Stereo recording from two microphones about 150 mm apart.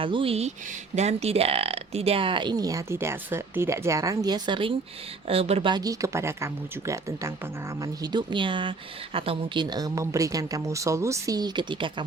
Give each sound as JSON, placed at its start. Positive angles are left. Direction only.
{"t": 0.0, "sound": "a woman's voice", "side_deg": -35}
{"t": 5.7, "sound": "a woman's voice", "side_deg": -25}